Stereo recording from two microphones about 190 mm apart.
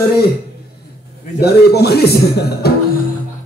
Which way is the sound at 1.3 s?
55° left (ahead or behind).